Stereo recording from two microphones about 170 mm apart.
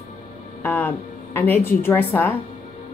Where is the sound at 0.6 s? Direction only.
10° left (ahead or behind).